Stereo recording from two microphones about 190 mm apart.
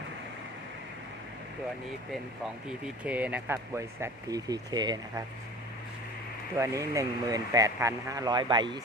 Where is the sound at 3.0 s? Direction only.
10° right (ahead or behind).